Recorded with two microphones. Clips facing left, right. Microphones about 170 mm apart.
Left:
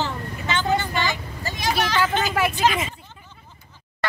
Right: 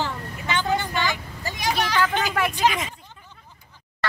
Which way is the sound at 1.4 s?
15° right (ahead or behind).